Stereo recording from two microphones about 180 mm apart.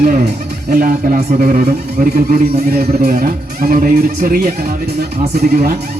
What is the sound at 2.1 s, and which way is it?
Speech, 55° right (ahead or behind).